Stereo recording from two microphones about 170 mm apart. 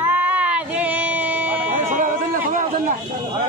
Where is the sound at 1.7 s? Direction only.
50° right (ahead or behind).